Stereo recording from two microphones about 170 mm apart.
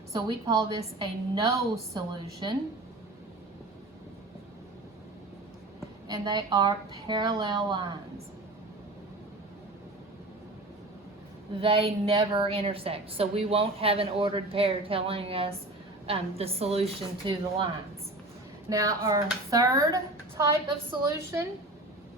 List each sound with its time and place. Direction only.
0.1 s a woman's voice: 25° right (ahead or behind)
6.1 s a woman's voice: 25° right (ahead or behind)
11.6 s a woman's voice: 35° right (ahead or behind)
18.7 s a woman's voice: 20° right (ahead or behind)